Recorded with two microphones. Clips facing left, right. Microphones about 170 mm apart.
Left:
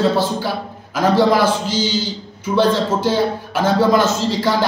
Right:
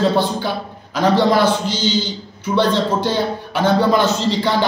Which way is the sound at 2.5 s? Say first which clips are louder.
Left 1 dB; 5° left (ahead or behind).